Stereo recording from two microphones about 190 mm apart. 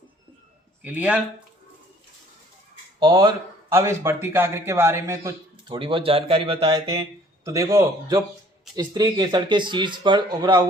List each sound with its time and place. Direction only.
0.8 s speech: 5° right (ahead or behind)
3.0 s speech: 20° right (ahead or behind)
6.9 s speech: 15° right (ahead or behind)